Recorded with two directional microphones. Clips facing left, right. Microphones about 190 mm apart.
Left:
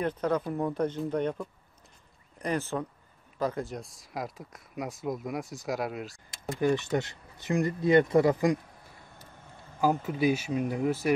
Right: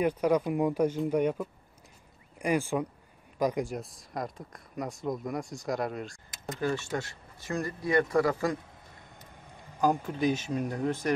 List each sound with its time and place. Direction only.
0.0 s speech: 10° right (ahead or behind)
3.8 s speech: centre (ahead or behind)
6.6 s speech: 15° left (ahead or behind)
9.3 s a sound: 15° right (ahead or behind)
10.0 s speech: 10° left (ahead or behind)